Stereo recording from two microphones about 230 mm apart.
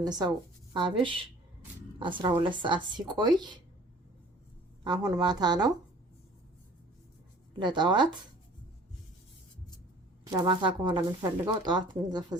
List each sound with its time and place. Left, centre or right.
0.0 s speech: centre
4.8 s speech: centre
7.6 s speech: centre
10.2 s speech: centre